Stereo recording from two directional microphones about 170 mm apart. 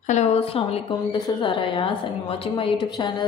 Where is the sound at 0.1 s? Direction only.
40° left (ahead or behind).